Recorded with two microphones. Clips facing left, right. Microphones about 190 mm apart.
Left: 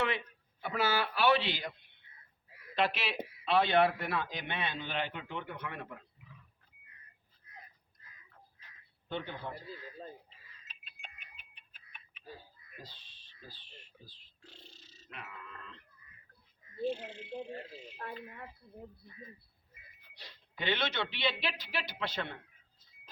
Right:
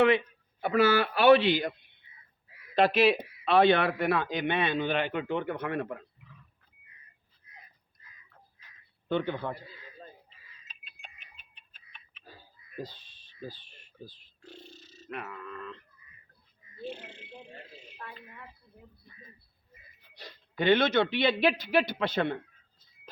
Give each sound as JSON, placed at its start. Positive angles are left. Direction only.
{"t": 0.6, "sound": "a man's voice", "side_deg": -60}
{"t": 2.7, "sound": "speech", "side_deg": -40}
{"t": 3.4, "sound": "a man's voice", "side_deg": -60}
{"t": 9.0, "sound": "a man's voice", "side_deg": -65}
{"t": 11.3, "sound": "clock", "side_deg": 10}
{"t": 12.8, "sound": "grunt", "side_deg": -45}
{"t": 16.9, "sound": "a man's voice", "side_deg": -60}
{"t": 17.5, "sound": "speech", "side_deg": 45}
{"t": 20.1, "sound": "speech", "side_deg": -45}